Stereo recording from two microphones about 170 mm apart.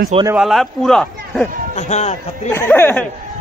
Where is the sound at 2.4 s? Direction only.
15° left (ahead or behind).